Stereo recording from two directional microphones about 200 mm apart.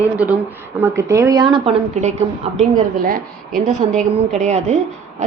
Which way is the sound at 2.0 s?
35° right (ahead or behind).